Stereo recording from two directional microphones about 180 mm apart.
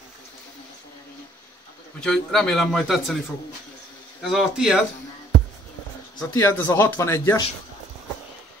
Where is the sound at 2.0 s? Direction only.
5° left (ahead or behind).